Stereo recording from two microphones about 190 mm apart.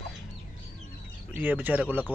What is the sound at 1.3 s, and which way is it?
Speech, 10° right (ahead or behind).